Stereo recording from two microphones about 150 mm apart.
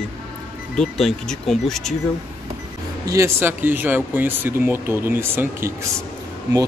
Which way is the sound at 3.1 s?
15° right (ahead or behind).